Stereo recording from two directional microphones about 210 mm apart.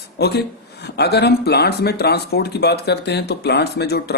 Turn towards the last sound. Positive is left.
turn(degrees=50)  # may be behind; listen again after turning